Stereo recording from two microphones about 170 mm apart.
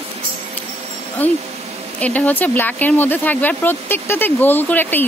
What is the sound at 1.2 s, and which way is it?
Speech, 10° left (ahead or behind).